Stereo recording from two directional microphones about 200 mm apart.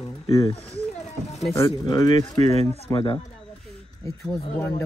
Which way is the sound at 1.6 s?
20° left (ahead or behind).